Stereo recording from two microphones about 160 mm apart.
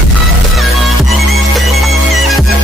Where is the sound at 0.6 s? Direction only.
Centre (ahead or behind).